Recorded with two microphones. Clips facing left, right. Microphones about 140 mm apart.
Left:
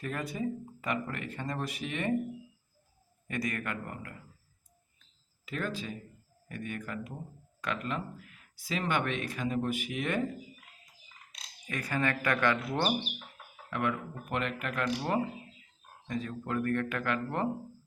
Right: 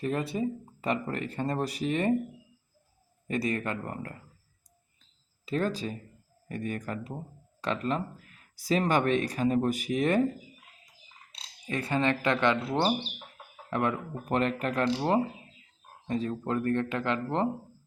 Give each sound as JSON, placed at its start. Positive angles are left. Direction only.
{"t": 0.0, "sound": "speech", "side_deg": -25}
{"t": 3.2, "sound": "speech", "side_deg": -30}
{"t": 5.5, "sound": "speech", "side_deg": -35}
{"t": 11.3, "sound": "speech", "side_deg": -30}